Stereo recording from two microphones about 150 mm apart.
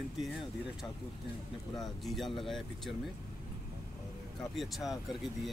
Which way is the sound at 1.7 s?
Centre (ahead or behind).